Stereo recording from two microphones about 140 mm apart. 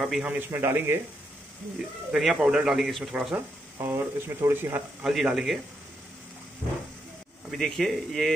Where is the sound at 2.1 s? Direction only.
5° right (ahead or behind).